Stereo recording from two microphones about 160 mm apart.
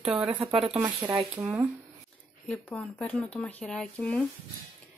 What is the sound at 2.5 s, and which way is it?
Speech, 10° left (ahead or behind).